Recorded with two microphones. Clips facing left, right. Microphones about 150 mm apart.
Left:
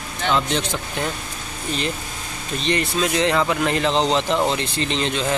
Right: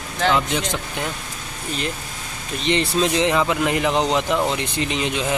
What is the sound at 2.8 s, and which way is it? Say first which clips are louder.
Speech: right 3 dB; 30° right (ahead or behind).